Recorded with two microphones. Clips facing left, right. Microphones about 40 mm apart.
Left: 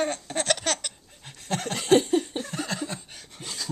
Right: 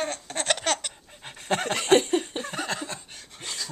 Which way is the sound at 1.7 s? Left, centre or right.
Right.